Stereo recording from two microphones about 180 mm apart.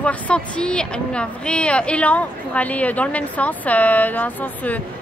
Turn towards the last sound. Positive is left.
turn(degrees=10)  # may be behind; listen again after turning